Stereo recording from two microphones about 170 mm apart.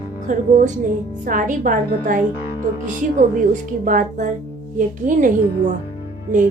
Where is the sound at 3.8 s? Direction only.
50° right (ahead or behind).